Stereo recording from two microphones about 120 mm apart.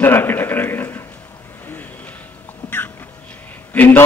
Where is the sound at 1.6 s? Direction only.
15° left (ahead or behind).